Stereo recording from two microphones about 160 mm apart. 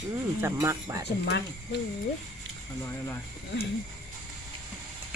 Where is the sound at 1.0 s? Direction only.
90° left.